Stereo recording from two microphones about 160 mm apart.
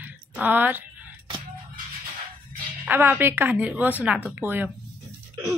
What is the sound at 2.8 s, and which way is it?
Speech, 10° right (ahead or behind).